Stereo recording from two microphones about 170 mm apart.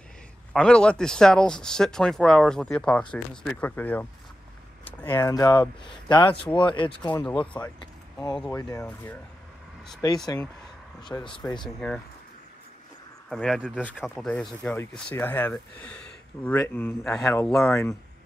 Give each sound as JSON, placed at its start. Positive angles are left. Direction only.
{"t": 0.5, "sound": "speech", "side_deg": 5}
{"t": 5.0, "sound": "speech", "side_deg": 20}
{"t": 7.2, "sound": "speech", "side_deg": 5}
{"t": 8.5, "sound": "speech", "side_deg": 20}
{"t": 10.0, "sound": "speech", "side_deg": 20}
{"t": 13.3, "sound": "speech", "side_deg": 0}
{"t": 17.5, "sound": "speech", "side_deg": 0}